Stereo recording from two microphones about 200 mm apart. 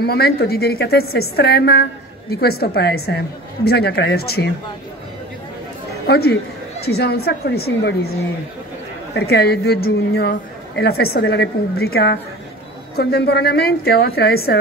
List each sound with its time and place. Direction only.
0.0 s a woman's voice: 50° left (ahead or behind)
6.0 s a woman's voice: 50° left (ahead or behind)
9.1 s a woman's voice: 55° left (ahead or behind)